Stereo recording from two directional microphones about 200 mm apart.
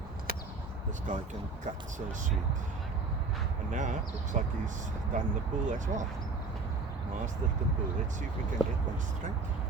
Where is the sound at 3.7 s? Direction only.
35° right (ahead or behind).